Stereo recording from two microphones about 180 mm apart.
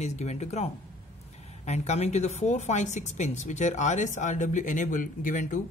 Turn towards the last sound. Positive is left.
turn(degrees=45)  # may be behind; listen again after turning